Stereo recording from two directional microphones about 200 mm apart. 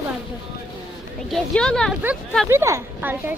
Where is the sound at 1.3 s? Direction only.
5° left (ahead or behind).